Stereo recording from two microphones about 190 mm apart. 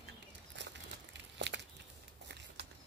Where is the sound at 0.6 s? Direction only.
70° right (ahead or behind).